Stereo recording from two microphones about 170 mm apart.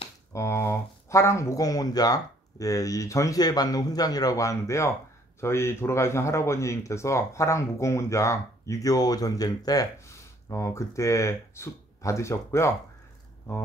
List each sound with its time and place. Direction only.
0.3 s speech: 15° left (ahead or behind)